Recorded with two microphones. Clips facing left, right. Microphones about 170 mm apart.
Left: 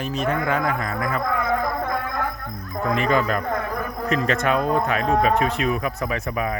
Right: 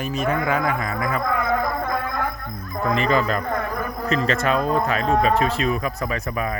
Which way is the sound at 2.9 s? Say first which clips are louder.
Even; 55° left (ahead or behind).